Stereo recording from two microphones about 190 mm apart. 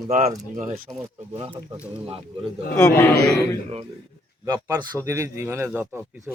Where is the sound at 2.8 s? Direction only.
10° left (ahead or behind).